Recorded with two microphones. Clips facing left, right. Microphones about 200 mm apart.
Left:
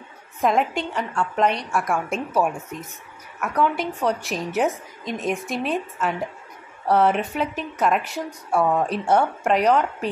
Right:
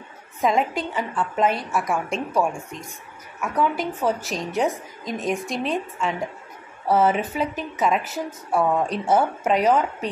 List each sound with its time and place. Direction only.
0.4 s a woman's voice: centre (ahead or behind)